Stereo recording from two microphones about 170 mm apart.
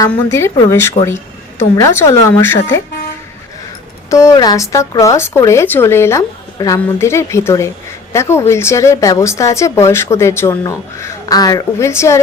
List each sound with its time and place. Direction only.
0.1 s a woman's voice: 15° left (ahead or behind)
4.1 s a woman's voice: 20° left (ahead or behind)